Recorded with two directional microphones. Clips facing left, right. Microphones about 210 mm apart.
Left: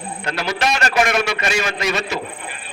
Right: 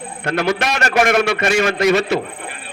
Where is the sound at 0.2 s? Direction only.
50° right (ahead or behind).